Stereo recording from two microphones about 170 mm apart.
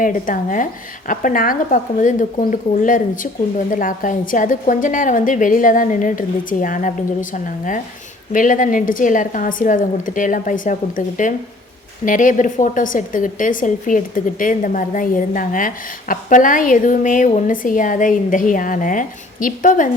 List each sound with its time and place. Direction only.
0.0 s a woman's voice: 50° left (ahead or behind)